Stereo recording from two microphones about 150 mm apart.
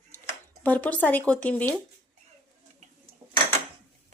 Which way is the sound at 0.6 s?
10° left (ahead or behind).